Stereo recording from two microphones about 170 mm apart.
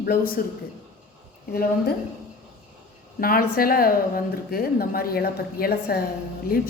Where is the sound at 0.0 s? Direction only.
60° left (ahead or behind).